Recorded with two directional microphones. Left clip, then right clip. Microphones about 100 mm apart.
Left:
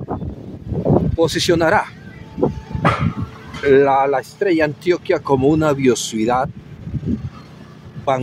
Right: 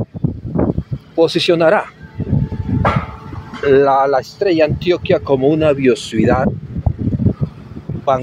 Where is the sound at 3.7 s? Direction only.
10° left (ahead or behind).